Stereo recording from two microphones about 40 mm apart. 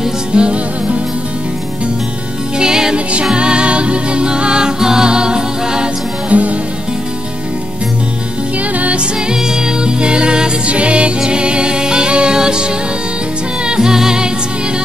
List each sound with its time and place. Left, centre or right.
0.3 s music: right
2.6 s music: centre
6.3 s music: right
8.7 s music: right
9.8 s music: right
13.7 s music: centre